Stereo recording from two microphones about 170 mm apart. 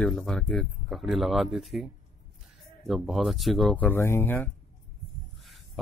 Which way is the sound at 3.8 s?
15° left (ahead or behind).